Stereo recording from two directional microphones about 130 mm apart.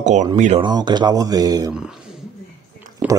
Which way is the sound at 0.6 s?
35° right (ahead or behind).